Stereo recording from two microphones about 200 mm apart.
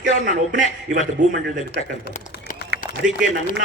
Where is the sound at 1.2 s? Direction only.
40° right (ahead or behind).